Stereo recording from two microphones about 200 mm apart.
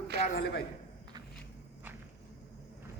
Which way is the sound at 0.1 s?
55° right (ahead or behind).